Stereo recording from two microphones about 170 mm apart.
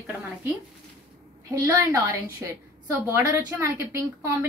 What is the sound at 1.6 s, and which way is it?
A woman's voice, 20° right (ahead or behind).